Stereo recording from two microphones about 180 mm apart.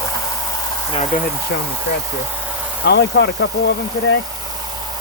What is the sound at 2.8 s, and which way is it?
Speech, 70° left (ahead or behind).